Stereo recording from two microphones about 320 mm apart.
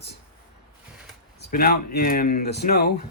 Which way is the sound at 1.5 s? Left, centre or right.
Left.